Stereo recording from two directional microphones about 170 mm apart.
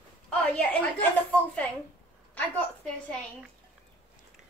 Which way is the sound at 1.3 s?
10° left (ahead or behind).